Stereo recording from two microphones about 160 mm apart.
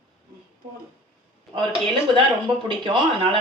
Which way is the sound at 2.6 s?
30° right (ahead or behind).